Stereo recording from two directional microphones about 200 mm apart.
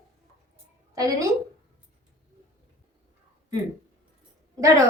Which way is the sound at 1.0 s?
15° right (ahead or behind).